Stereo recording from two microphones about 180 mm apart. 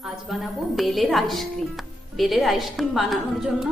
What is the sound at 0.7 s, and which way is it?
A woman's voice, centre (ahead or behind).